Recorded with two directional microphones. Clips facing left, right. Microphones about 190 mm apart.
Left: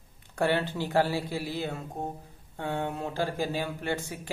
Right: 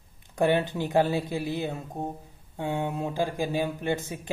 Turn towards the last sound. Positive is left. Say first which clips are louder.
# right 3 dB
turn(degrees=-20)  # may be behind; listen again after turning